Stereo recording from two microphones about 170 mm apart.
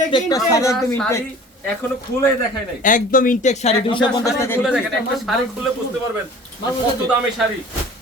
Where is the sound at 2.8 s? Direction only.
50° left (ahead or behind); by 4.1 s 30° left (ahead or behind).